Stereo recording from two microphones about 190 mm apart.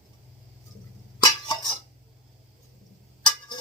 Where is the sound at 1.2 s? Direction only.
20° left (ahead or behind).